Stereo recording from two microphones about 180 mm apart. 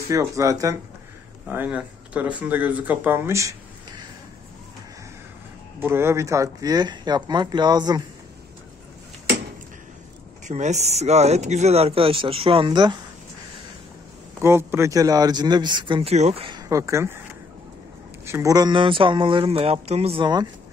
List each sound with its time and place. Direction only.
0.1 s speech: 15° right (ahead or behind)
1.5 s speech: 10° right (ahead or behind)
5.8 s speech: 15° right (ahead or behind)
10.5 s speech: 40° right (ahead or behind)
14.4 s speech: 15° right (ahead or behind); by 16.4 s 35° right (ahead or behind)
16.4 s speech: 20° right (ahead or behind)
18.2 s speech: 15° right (ahead or behind)